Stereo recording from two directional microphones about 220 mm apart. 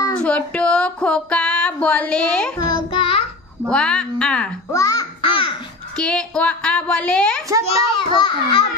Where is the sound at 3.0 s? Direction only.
25° left (ahead or behind).